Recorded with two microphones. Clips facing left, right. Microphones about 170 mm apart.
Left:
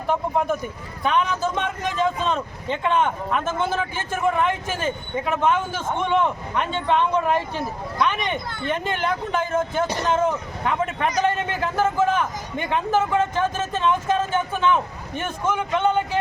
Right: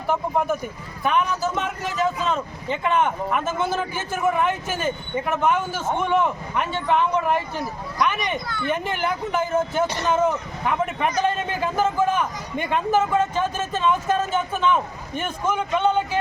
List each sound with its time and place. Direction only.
0.1 s a man's voice: 5° right (ahead or behind)
7.5 s speech: 25° left (ahead or behind)
8.0 s a man's voice: 10° right (ahead or behind)